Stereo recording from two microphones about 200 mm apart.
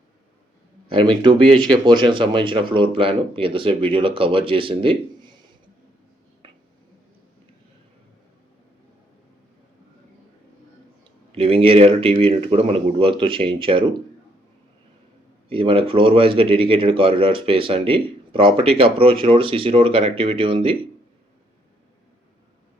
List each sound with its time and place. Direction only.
0.9 s speech: 25° right (ahead or behind)
11.3 s speech: 30° right (ahead or behind)
15.4 s speech: 25° right (ahead or behind)